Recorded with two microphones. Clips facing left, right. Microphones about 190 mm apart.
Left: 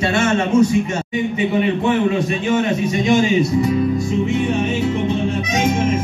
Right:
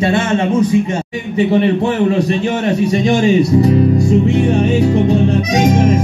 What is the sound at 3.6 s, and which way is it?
Music, 35° right (ahead or behind).